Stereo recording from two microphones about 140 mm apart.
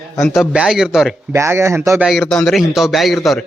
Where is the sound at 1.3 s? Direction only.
20° right (ahead or behind).